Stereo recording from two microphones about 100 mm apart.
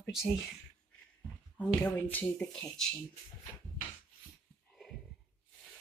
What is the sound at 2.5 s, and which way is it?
Speech, 5° left (ahead or behind).